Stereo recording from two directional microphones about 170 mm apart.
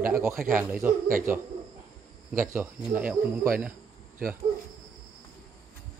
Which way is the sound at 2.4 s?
10° right (ahead or behind).